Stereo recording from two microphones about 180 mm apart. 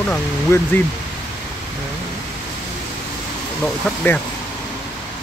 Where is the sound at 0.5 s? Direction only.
15° left (ahead or behind).